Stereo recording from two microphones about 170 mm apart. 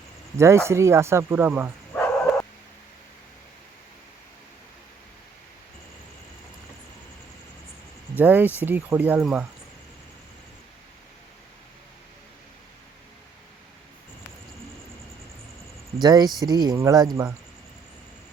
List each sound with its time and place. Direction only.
0.3 s speech: 15° right (ahead or behind)
2.0 s bow-wow: 10° left (ahead or behind)
8.1 s speech: 10° right (ahead or behind)
16.0 s speech: 25° right (ahead or behind)